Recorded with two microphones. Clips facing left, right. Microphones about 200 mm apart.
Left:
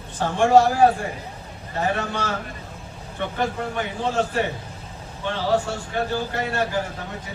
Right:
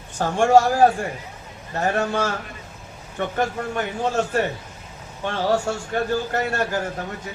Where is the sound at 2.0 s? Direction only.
45° right (ahead or behind).